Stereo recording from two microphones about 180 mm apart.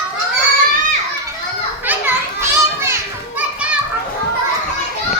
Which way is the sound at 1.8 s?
10° right (ahead or behind).